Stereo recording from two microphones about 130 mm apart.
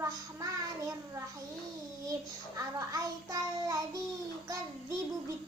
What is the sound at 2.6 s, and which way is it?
Speech, 25° right (ahead or behind).